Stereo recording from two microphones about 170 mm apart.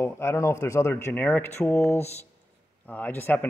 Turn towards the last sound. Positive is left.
turn(degrees=10)  # may be behind; listen again after turning